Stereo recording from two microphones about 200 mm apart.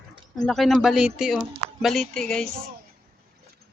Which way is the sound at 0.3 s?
Centre (ahead or behind).